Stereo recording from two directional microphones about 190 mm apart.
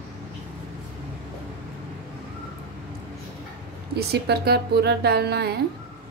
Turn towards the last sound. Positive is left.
turn(degrees=-60)  # may be behind; listen again after turning